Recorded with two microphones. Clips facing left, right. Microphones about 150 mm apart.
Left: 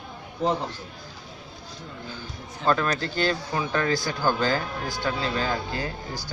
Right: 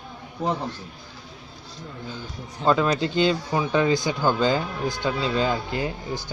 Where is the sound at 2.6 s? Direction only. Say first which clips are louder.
Right 3 dB; 15° right (ahead or behind).